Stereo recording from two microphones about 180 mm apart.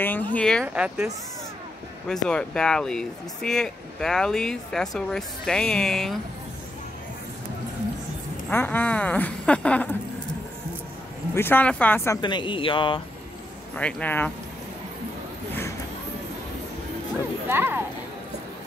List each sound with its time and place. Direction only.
0.0 s speech: 10° left (ahead or behind)
0.7 s speech: 5° right (ahead or behind)
2.0 s speech: 5° left (ahead or behind)
8.5 s speech: 10° left (ahead or behind)
11.3 s speech: 10° left (ahead or behind)
12.2 s speech: 25° left (ahead or behind)
13.7 s speech: 5° left (ahead or behind)
17.5 s speech: 10° right (ahead or behind)